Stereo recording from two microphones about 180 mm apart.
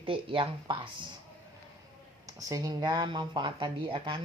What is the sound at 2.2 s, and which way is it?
Speech, 20° right (ahead or behind).